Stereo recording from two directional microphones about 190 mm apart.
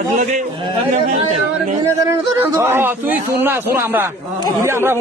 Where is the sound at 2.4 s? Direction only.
15° right (ahead or behind).